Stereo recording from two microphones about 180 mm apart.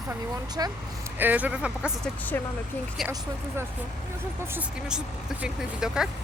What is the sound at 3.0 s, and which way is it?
Speech, centre (ahead or behind).